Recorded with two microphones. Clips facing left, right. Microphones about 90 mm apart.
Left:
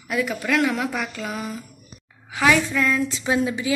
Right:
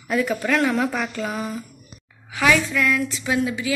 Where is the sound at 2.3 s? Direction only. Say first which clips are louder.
Even; 25° left (ahead or behind).